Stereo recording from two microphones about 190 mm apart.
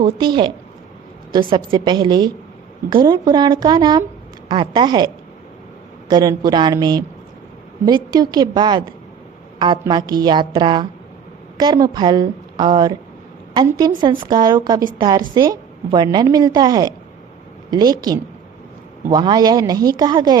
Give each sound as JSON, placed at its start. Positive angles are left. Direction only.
{"t": 0.0, "sound": "a woman's voice", "side_deg": -25}